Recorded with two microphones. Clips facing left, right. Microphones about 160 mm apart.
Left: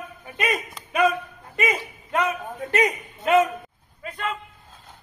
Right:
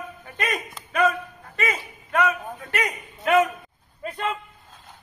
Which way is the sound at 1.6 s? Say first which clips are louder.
Left 3 dB; 15° left (ahead or behind).